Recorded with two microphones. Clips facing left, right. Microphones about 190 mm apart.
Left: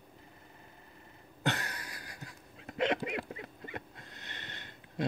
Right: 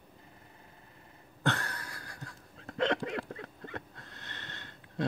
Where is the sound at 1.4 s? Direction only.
20° left (ahead or behind).